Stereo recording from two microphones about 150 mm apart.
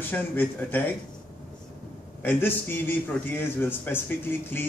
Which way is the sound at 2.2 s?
15° left (ahead or behind).